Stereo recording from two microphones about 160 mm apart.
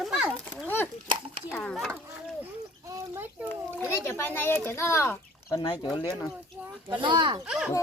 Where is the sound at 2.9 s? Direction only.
15° right (ahead or behind).